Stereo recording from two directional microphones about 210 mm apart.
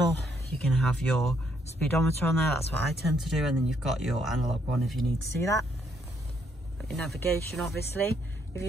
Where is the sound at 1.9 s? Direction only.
10° left (ahead or behind).